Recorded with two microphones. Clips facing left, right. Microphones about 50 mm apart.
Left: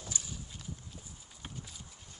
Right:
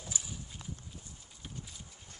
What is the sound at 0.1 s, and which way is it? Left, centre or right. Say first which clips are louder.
Clip-clop: even; centre.